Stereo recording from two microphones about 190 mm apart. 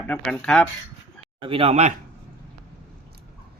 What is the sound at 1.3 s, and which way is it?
Speech, 30° right (ahead or behind).